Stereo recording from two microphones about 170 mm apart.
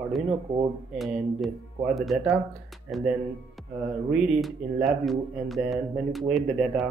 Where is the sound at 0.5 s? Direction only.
35° right (ahead or behind).